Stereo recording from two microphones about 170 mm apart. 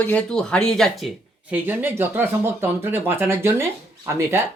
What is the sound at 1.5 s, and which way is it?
Speech, 10° right (ahead or behind).